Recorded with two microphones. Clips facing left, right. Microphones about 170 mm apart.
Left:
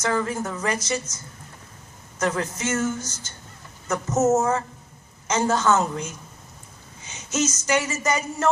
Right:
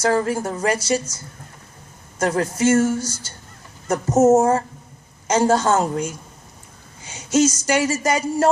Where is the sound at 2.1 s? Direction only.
35° right (ahead or behind).